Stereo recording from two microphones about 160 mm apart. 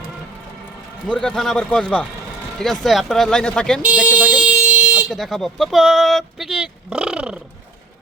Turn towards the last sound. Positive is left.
turn(degrees=-5)  # may be behind; listen again after turning